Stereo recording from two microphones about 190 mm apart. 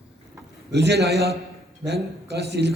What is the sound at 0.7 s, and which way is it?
A man's voice, 65° right (ahead or behind).